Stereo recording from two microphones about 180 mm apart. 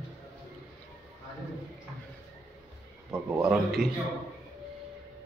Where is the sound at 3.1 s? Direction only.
10° right (ahead or behind).